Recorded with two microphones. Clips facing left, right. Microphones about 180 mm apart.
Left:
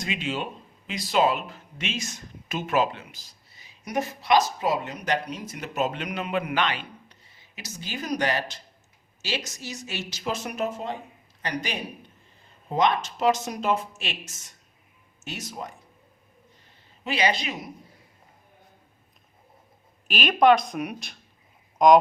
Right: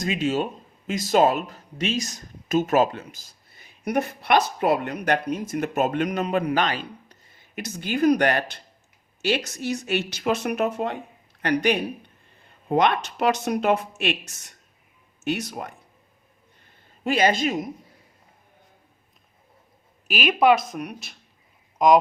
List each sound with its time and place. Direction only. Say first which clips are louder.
0.0 s speech: right 6 dB; 45° right (ahead or behind); by 15.7 s 60° right (ahead or behind)
17.0 s speech: right 5 dB; 50° right (ahead or behind)
20.1 s speech: even; 5° right (ahead or behind)